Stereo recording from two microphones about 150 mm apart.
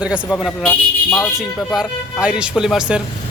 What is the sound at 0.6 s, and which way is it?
Speech, 15° left (ahead or behind).